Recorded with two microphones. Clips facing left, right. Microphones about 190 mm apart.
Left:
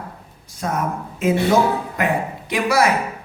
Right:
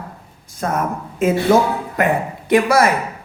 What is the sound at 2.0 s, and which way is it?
Speech, 50° right (ahead or behind).